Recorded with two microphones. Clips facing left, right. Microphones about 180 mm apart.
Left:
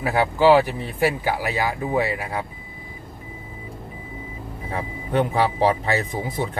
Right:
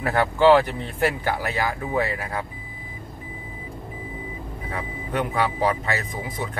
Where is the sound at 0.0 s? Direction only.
5° left (ahead or behind).